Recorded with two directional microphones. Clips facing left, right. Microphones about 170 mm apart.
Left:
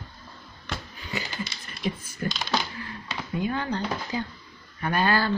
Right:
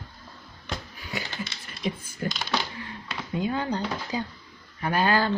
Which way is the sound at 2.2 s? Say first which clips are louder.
Even; 15° right (ahead or behind).